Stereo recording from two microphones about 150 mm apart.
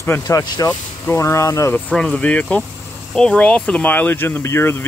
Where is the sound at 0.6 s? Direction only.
15° left (ahead or behind).